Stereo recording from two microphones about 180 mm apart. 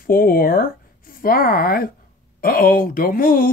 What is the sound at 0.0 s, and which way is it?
Speech, 55° left (ahead or behind).